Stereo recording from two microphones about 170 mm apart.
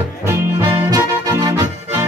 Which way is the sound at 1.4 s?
20° right (ahead or behind).